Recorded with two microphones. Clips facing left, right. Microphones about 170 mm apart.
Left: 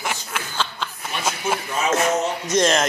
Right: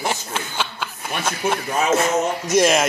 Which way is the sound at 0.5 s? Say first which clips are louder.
Left 3 dB; 10° right (ahead or behind).